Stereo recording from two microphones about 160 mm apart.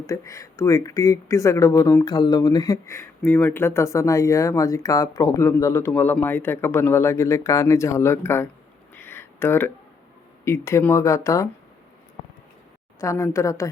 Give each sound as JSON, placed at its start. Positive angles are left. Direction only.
{"t": 0.1, "sound": "speech", "side_deg": 20}
{"t": 9.0, "sound": "a sound", "side_deg": 15}
{"t": 10.4, "sound": "speech", "side_deg": 15}
{"t": 13.0, "sound": "speech", "side_deg": 20}